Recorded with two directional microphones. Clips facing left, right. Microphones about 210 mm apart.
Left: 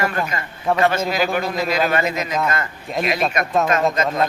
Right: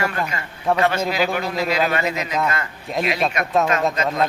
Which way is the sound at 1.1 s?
45° left (ahead or behind).